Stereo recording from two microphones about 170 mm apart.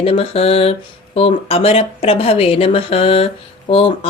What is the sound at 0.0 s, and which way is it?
Speech, 35° left (ahead or behind).